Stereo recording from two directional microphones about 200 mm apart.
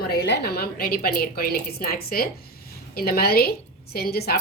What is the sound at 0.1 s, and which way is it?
A woman's voice, 50° left (ahead or behind).